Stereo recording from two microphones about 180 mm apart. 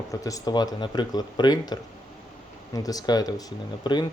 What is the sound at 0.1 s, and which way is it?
Speech, 20° left (ahead or behind).